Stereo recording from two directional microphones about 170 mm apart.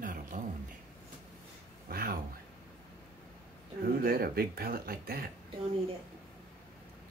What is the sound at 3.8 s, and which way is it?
Speech, 60° right (ahead or behind).